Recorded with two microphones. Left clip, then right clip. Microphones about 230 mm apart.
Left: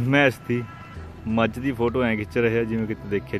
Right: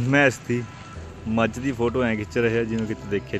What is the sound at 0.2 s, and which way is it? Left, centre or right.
Speech, centre.